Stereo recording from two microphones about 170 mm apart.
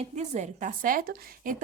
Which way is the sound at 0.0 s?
45° right (ahead or behind).